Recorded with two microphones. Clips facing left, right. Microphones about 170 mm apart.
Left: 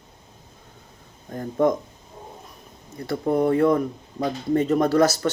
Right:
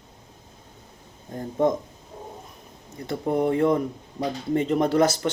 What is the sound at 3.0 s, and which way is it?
Speech, 20° right (ahead or behind).